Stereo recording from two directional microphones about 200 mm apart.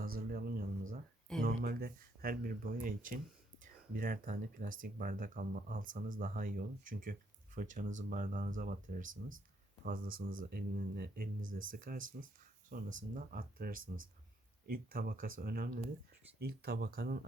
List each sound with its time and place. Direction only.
0.3 s a sound: 50° right (ahead or behind)
1.4 s speech: 50° right (ahead or behind)
13.8 s speech: 85° right
14.7 s speech: 45° right (ahead or behind)